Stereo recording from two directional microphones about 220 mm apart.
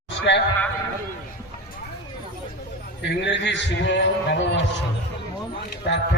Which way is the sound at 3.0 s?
50° left (ahead or behind).